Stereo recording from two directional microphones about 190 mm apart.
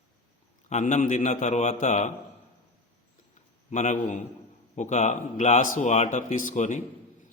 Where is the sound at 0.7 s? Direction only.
40° left (ahead or behind).